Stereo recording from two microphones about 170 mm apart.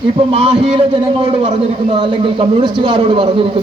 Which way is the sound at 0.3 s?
30° right (ahead or behind).